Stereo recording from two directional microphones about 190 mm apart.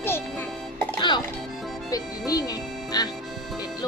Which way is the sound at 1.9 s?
20° left (ahead or behind).